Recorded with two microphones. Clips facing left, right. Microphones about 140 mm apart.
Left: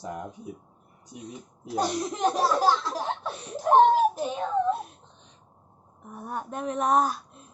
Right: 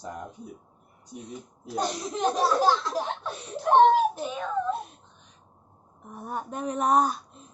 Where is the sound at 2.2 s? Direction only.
5° left (ahead or behind).